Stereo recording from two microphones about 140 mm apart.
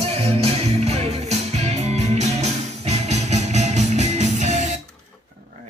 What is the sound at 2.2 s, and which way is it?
Music, 50° right (ahead or behind).